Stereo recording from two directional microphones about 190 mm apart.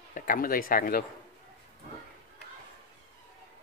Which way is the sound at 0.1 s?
45° left (ahead or behind).